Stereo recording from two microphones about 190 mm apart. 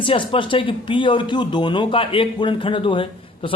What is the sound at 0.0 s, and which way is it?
Speech, 25° left (ahead or behind).